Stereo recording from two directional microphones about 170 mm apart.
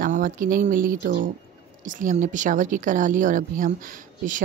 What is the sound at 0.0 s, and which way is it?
A woman's voice, 55° right (ahead or behind).